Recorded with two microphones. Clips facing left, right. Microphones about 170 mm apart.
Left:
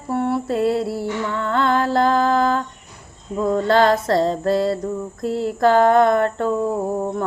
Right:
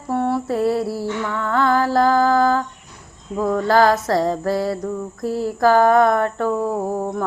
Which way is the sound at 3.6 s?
25° left (ahead or behind).